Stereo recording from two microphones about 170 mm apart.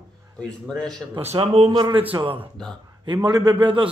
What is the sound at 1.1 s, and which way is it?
A man's voice, 35° right (ahead or behind).